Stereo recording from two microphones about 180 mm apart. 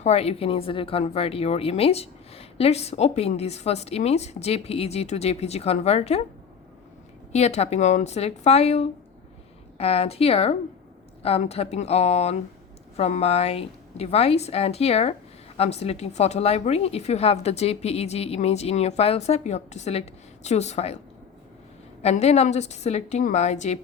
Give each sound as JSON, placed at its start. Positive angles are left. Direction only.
{"t": 0.0, "sound": "speech", "side_deg": 35}
{"t": 7.3, "sound": "speech", "side_deg": 40}
{"t": 22.0, "sound": "speech", "side_deg": 35}